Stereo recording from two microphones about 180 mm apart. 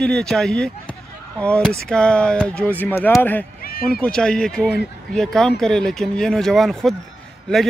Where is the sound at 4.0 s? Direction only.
5° left (ahead or behind).